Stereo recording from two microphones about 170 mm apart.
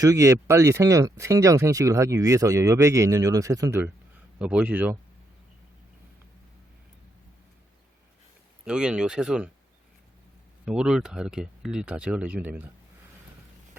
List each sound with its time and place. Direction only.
0.0 s speech: 20° right (ahead or behind)
8.6 s speech: 5° right (ahead or behind)
10.7 s speech: 5° right (ahead or behind)